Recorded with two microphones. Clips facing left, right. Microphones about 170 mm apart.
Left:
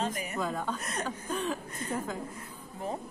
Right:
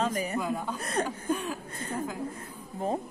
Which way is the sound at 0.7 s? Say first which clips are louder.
Right 6 dB; 35° right (ahead or behind).